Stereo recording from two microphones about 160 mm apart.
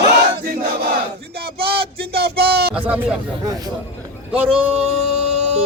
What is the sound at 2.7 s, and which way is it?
Speech, 10° right (ahead or behind).